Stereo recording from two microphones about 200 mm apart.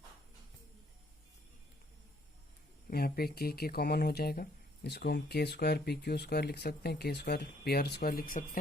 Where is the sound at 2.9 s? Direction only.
50° left (ahead or behind).